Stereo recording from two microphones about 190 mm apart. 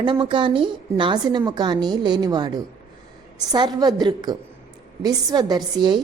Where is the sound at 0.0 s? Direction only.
25° right (ahead or behind).